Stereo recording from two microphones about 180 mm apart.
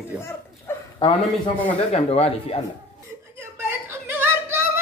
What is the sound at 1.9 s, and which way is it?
Speech, 35° left (ahead or behind).